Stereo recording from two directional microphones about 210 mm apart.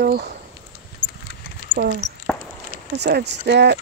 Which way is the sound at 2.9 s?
55° right (ahead or behind).